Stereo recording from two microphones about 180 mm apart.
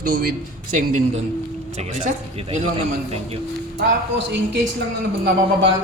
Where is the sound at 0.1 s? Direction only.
55° right (ahead or behind); by 2.6 s 40° right (ahead or behind).